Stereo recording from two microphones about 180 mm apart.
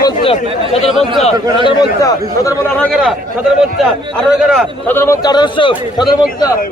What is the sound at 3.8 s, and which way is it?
A man's voice, centre (ahead or behind).